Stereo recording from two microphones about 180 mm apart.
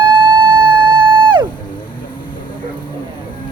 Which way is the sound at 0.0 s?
25° right (ahead or behind).